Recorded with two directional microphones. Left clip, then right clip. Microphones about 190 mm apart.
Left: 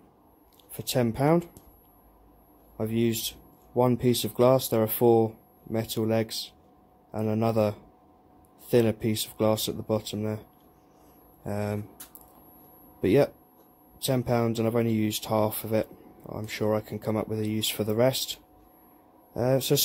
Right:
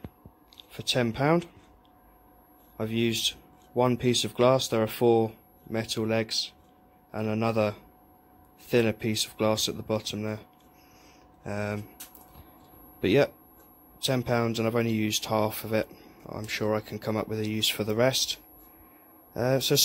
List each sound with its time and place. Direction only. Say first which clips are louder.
0.6 s speech: right 1 dB; 15° left (ahead or behind)
2.8 s speech: right 1 dB; 10° left (ahead or behind)
11.4 s speech: left 1 dB; 15° left (ahead or behind)
13.0 s speech: left 1 dB; 10° left (ahead or behind)